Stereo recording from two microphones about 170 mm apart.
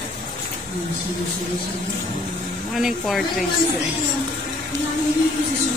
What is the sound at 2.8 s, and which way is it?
Speech, centre (ahead or behind).